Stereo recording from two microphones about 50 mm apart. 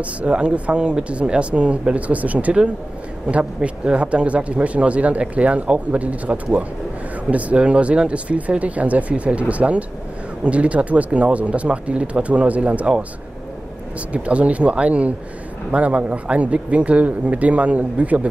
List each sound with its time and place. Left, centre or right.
0.0 s speech: right
14.1 s speech: right